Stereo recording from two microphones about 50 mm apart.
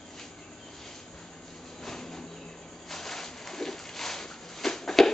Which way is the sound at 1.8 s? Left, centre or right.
Centre.